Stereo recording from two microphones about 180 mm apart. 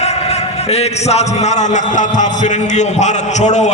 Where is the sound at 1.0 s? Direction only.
35° left (ahead or behind).